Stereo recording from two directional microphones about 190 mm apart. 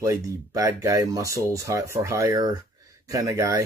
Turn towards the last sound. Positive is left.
turn(degrees=-15)  # may be behind; listen again after turning